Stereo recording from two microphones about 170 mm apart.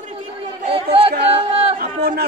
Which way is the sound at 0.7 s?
35° right (ahead or behind).